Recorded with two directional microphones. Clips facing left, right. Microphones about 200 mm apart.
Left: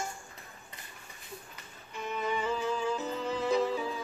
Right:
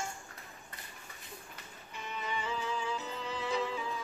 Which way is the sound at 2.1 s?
50° left (ahead or behind).